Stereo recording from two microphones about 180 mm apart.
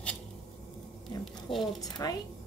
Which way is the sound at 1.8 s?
20° left (ahead or behind).